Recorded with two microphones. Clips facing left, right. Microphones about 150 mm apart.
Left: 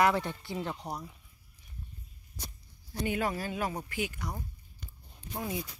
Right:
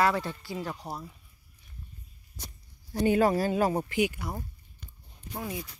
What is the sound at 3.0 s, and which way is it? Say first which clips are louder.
Speech: right 8 dB; 40° right (ahead or behind).